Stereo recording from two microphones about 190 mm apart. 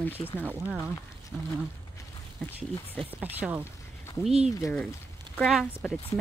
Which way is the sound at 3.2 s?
10° right (ahead or behind).